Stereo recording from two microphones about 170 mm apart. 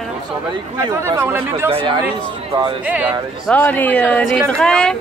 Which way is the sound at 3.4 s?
10° left (ahead or behind).